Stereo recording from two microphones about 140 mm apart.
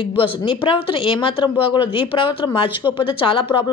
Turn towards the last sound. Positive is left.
turn(degrees=40)  # may be behind; listen again after turning